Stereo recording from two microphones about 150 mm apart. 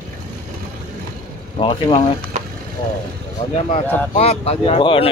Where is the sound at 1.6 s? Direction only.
35° left (ahead or behind).